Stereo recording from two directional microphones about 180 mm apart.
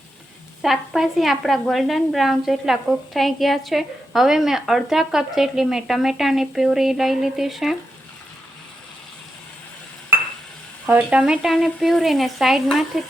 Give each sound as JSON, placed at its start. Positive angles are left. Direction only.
{"t": 0.6, "sound": "a woman's voice", "side_deg": 0}
{"t": 10.8, "sound": "a woman's voice", "side_deg": -5}